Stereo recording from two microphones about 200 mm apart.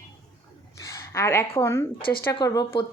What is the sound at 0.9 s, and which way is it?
A woman's voice, 15° left (ahead or behind).